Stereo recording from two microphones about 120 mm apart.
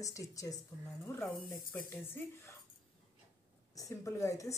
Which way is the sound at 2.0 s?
20° left (ahead or behind).